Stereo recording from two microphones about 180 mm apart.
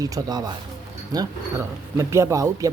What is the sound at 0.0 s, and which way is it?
Speech, 20° right (ahead or behind).